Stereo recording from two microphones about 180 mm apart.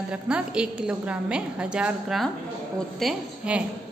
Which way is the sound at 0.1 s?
5° right (ahead or behind).